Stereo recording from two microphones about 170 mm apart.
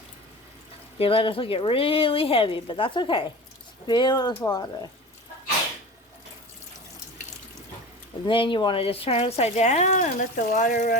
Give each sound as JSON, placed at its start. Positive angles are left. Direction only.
{"t": 0.9, "sound": "speech", "side_deg": 30}
{"t": 8.3, "sound": "speech", "side_deg": 30}